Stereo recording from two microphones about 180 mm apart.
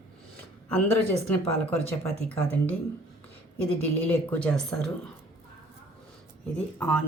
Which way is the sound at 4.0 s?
10° left (ahead or behind).